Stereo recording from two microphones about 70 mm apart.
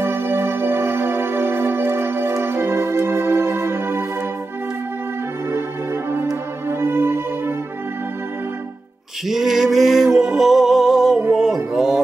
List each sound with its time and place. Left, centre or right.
0.0 s music: right
6.7 s music: right
9.3 s music: centre